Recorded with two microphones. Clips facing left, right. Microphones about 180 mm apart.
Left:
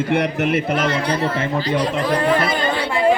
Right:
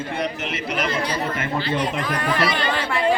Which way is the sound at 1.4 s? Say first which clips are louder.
Left 4 dB; 40° left (ahead or behind).